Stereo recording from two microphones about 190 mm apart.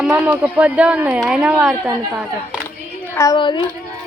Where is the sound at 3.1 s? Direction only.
20° left (ahead or behind).